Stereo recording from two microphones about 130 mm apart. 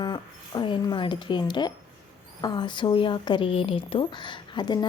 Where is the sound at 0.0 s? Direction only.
35° left (ahead or behind).